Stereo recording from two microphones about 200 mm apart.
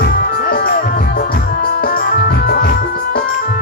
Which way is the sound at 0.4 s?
45° left (ahead or behind).